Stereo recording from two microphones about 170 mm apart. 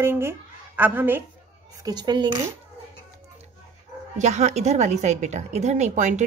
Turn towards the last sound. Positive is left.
turn(degrees=-45)  # may be behind; listen again after turning